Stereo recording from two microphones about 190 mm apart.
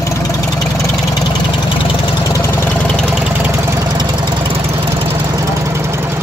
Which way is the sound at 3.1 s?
5° right (ahead or behind).